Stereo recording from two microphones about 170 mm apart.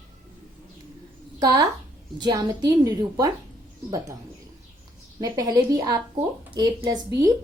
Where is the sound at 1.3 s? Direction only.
20° right (ahead or behind).